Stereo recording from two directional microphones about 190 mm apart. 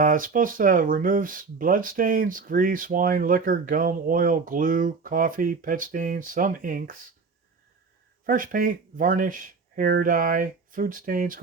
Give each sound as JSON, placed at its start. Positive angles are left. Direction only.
{"t": 0.0, "sound": "speech", "side_deg": -45}
{"t": 8.3, "sound": "speech", "side_deg": -45}